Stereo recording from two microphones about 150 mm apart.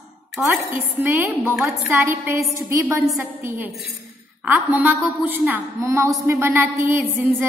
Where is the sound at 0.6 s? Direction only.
15° right (ahead or behind).